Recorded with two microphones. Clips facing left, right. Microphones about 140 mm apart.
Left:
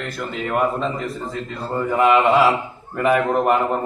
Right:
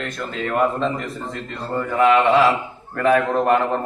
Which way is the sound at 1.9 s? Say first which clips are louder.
Even; 15° left (ahead or behind).